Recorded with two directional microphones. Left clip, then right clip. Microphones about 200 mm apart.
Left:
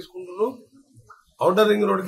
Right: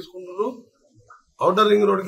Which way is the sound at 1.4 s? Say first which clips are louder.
Right 2 dB; centre (ahead or behind).